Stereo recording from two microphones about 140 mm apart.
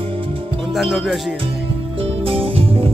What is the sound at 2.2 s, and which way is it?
Music, 40° right (ahead or behind).